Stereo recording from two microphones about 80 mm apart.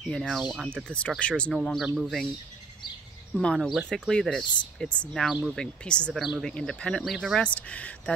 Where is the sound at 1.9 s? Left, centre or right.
Centre.